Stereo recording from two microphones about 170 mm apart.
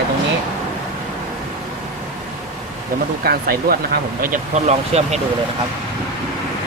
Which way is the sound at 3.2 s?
60° right (ahead or behind).